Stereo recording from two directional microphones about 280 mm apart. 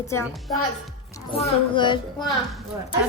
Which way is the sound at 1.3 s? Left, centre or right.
Centre.